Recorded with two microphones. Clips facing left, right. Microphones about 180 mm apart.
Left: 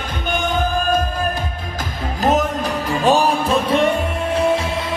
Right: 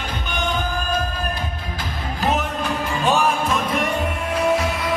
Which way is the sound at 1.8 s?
40° left (ahead or behind).